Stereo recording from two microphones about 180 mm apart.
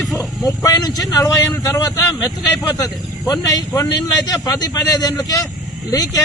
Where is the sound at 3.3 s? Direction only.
20° left (ahead or behind).